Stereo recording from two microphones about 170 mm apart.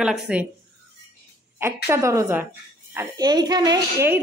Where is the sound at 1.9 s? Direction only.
15° right (ahead or behind).